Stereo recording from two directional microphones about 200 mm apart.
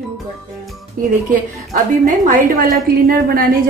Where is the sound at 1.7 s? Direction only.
40° right (ahead or behind).